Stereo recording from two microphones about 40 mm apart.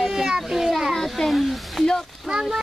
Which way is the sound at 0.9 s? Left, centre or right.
Centre.